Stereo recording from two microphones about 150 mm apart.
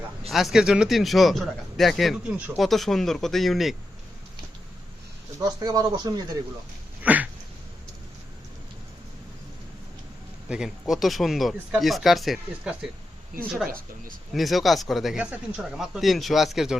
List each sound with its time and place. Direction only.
0.3 s speech: centre (ahead or behind)
5.4 s speech: 25° right (ahead or behind)
7.0 s a sound: 10° right (ahead or behind)
10.5 s speech: 5° right (ahead or behind)
13.7 s speech: 70° right (ahead or behind)
14.3 s speech: centre (ahead or behind)